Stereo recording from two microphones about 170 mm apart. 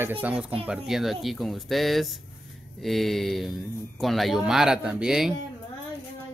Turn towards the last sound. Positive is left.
turn(degrees=-5)  # may be behind; listen again after turning